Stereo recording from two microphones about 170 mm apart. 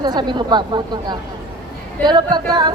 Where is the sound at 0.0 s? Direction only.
25° right (ahead or behind).